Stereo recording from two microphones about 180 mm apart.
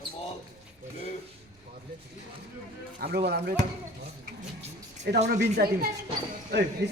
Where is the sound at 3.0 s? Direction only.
60° right (ahead or behind).